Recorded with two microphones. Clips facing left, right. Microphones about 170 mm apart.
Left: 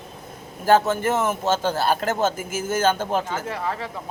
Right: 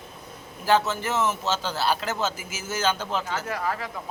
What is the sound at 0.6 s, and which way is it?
A man's voice, 50° left (ahead or behind).